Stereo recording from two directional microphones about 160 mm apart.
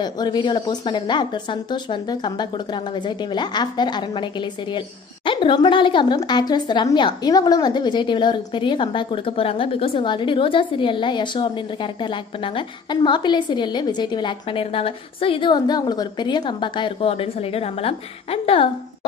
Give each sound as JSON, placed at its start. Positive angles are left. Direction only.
{"t": 0.0, "sound": "a woman's voice", "side_deg": 25}